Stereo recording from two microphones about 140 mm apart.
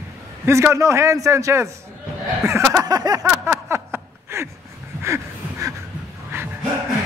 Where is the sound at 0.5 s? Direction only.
20° right (ahead or behind).